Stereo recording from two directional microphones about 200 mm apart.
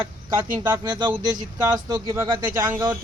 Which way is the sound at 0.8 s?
20° right (ahead or behind).